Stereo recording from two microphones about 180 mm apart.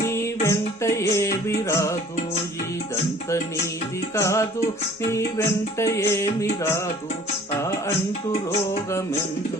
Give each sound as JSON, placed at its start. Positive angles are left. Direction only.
{"t": 0.0, "sound": "music", "side_deg": 15}
{"t": 4.1, "sound": "music", "side_deg": 15}